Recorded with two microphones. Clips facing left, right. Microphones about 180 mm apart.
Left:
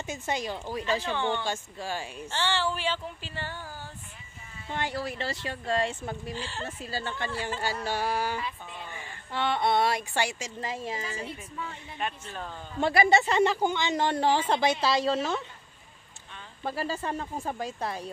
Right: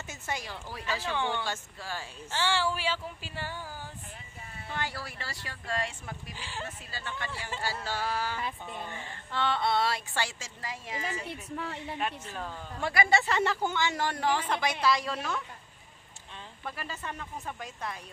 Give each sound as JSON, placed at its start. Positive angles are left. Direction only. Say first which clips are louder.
{"t": 0.0, "sound": "speech", "louder": "left 6 dB", "side_deg": 20}
{"t": 1.1, "sound": "speech", "louder": "left 2 dB", "side_deg": -10}
{"t": 1.4, "sound": "speech", "louder": "left 4 dB", "side_deg": 15}
{"t": 2.3, "sound": "speech", "louder": "even", "side_deg": -10}
{"t": 4.6, "sound": "speech", "louder": "left 5 dB", "side_deg": 20}
{"t": 6.3, "sound": "speech", "louder": "left 5 dB", "side_deg": -10}
{"t": 6.6, "sound": "speech", "louder": "left 5 dB", "side_deg": 30}
{"t": 7.6, "sound": "speech", "louder": "left 2 dB", "side_deg": 15}
{"t": 11.2, "sound": "a woman's voice", "louder": "right 1 dB", "side_deg": -70}
{"t": 12.0, "sound": "speech", "louder": "left 3 dB", "side_deg": 0}
{"t": 12.8, "sound": "speech", "louder": "left 4 dB", "side_deg": 25}
{"t": 16.6, "sound": "speech", "louder": "left 8 dB", "side_deg": 35}